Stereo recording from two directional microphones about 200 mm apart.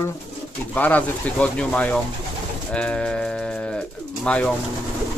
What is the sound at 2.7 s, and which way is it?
Music, 5° left (ahead or behind).